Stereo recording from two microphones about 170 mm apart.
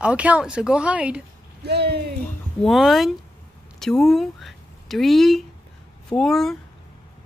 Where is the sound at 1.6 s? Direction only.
75° right (ahead or behind).